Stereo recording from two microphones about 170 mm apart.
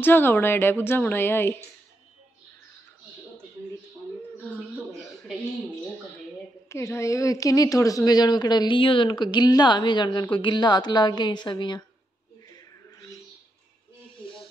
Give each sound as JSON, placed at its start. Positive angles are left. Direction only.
{"t": 0.0, "sound": "a woman's voice", "side_deg": 10}
{"t": 6.7, "sound": "a woman's voice", "side_deg": 15}
{"t": 12.5, "sound": "a sound", "side_deg": 20}